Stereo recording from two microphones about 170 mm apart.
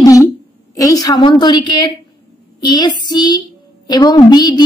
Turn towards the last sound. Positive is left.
turn(degrees=25)  # may be behind; listen again after turning